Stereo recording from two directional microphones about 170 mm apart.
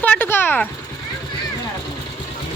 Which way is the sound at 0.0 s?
10° left (ahead or behind).